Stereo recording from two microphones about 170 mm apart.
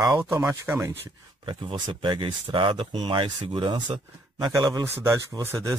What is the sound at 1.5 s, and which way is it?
Speech, 25° right (ahead or behind).